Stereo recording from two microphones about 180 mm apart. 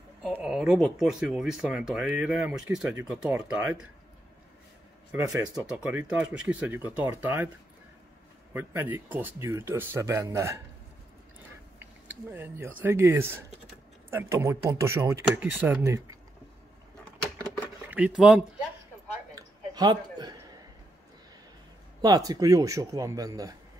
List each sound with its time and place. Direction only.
0.3 s speech: 5° right (ahead or behind)
5.1 s a man's voice: 20° right (ahead or behind)
5.5 s speech: 5° right (ahead or behind)
8.5 s speech: 10° right (ahead or behind)
11.8 s speech: 10° right (ahead or behind)
17.8 s speech: 10° right (ahead or behind)
19.3 s a sound: 25° right (ahead or behind)
22.0 s a man's voice: 20° right (ahead or behind)